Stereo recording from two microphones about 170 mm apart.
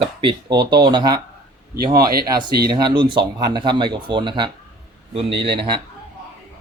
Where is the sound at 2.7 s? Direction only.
25° right (ahead or behind).